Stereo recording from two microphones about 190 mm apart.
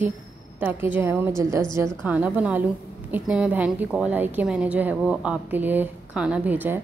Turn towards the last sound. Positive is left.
turn(degrees=-10)  # may be behind; listen again after turning